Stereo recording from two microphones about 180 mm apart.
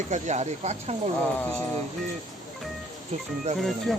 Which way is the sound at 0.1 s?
40° right (ahead or behind).